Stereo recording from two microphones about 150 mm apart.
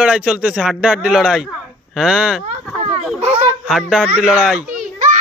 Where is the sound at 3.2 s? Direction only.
45° right (ahead or behind).